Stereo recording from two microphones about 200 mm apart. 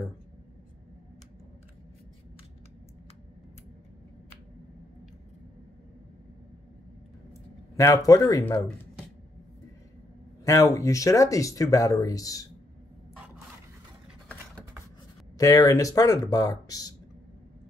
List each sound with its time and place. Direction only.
7.7 s speech: 15° left (ahead or behind)
10.4 s speech: 15° left (ahead or behind)
15.3 s speech: 15° left (ahead or behind)